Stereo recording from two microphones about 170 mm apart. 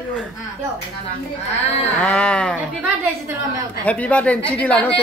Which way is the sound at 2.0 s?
10° left (ahead or behind).